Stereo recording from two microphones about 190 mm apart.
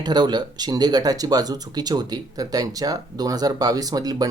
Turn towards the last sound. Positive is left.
turn(degrees=-20)  # may be behind; listen again after turning